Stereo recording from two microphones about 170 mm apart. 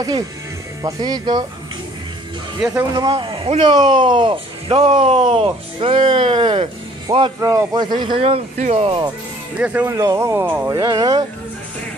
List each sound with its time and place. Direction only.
0.8 s speech: 25° right (ahead or behind)
2.7 s speech: 20° right (ahead or behind)
7.3 s speech: 15° right (ahead or behind)
9.6 s speech: 10° right (ahead or behind)